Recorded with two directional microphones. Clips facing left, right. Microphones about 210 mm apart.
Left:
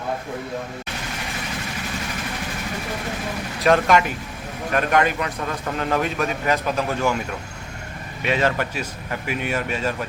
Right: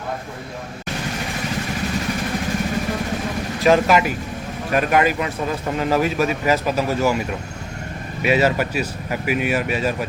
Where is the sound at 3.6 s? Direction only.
5° right (ahead or behind).